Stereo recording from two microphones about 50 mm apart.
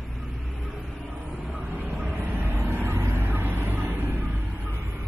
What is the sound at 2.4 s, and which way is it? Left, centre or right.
Vehicle, right.